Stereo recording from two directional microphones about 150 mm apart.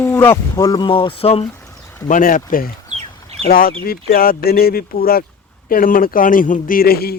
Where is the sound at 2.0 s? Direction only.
65° left (ahead or behind); by 5.2 s 85° left.